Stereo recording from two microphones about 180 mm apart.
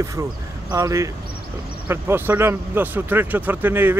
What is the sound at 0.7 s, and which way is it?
A man's voice, 15° right (ahead or behind).